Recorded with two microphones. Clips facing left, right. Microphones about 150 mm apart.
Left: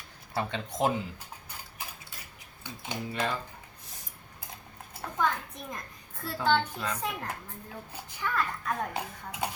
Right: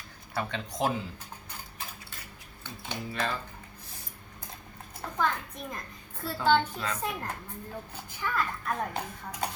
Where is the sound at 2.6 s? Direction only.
15° left (ahead or behind).